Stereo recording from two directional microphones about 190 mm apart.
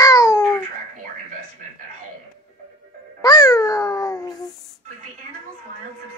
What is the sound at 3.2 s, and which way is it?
Babbling, 20° left (ahead or behind).